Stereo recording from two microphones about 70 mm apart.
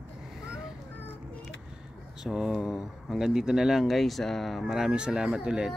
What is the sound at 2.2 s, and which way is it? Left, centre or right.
Speech, centre.